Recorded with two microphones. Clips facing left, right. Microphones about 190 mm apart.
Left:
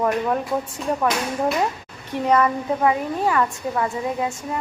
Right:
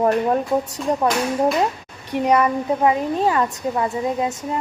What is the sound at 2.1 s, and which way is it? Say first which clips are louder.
Speech: right 2 dB; 15° right (ahead or behind).